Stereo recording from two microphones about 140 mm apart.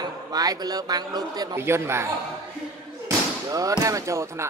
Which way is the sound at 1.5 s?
20° right (ahead or behind).